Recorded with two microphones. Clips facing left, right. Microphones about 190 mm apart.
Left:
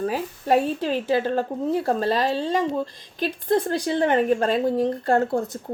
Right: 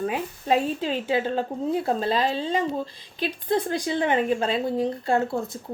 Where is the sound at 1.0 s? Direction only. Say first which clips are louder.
Left 2 dB; 40° left (ahead or behind).